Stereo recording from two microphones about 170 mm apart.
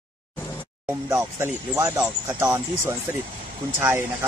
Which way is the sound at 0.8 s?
15° right (ahead or behind).